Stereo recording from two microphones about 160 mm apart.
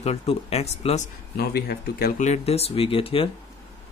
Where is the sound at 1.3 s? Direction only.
75° left (ahead or behind).